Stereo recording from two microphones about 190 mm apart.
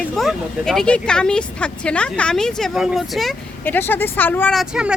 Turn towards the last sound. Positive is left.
turn(degrees=-5)  # may be behind; listen again after turning